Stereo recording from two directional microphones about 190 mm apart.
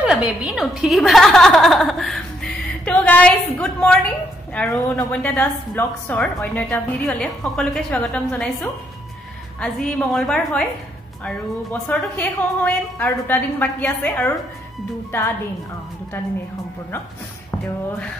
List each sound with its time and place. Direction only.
0.0 s a woman's voice: 5° right (ahead or behind)
9.6 s a woman's voice: 5° left (ahead or behind)
11.9 s a woman's voice: 10° left (ahead or behind)